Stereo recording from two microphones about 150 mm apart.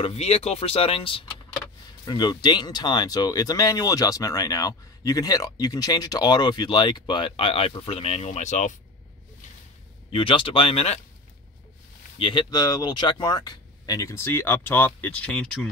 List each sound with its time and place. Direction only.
0.0 s speech: 40° left (ahead or behind)
10.1 s speech: 35° left (ahead or behind)
12.2 s speech: 35° left (ahead or behind); by 15.5 s 5° left (ahead or behind)